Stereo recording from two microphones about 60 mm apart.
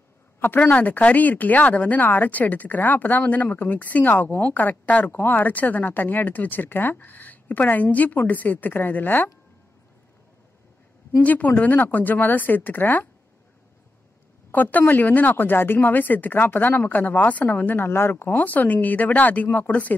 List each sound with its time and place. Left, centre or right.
0.4 s a woman's voice: left
11.1 s a woman's voice: left
14.5 s a woman's voice: left